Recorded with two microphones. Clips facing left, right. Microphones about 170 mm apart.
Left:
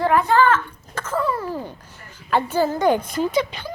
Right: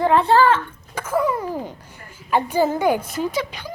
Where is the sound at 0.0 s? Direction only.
25° right (ahead or behind).